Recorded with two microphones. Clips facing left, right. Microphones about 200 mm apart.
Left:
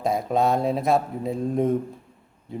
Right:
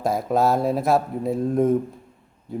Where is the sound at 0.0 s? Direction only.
Centre (ahead or behind).